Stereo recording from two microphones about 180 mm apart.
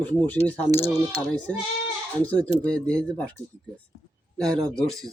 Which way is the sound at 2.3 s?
10° left (ahead or behind).